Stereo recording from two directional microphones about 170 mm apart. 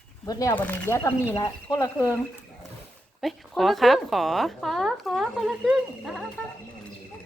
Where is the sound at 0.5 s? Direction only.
10° left (ahead or behind).